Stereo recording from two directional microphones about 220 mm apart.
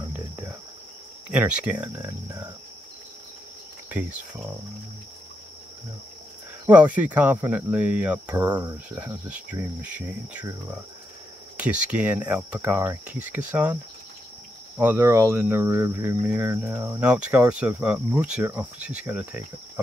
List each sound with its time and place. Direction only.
1.3 s speech: 5° right (ahead or behind)
3.9 s speech: 5° right (ahead or behind)
6.6 s speech: 5° right (ahead or behind)
14.8 s speech: 10° right (ahead or behind)